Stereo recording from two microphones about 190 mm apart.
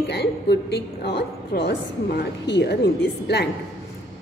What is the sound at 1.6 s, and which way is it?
A woman's voice, 60° left (ahead or behind).